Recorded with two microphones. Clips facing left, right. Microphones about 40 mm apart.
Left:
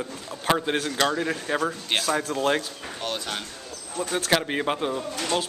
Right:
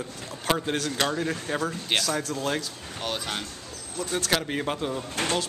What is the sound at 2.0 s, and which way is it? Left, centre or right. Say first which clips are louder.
Speech: left 4 dB; left.